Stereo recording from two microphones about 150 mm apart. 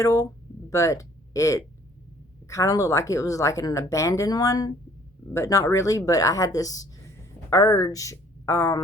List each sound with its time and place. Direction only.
0.0 s a woman's voice: 20° left (ahead or behind)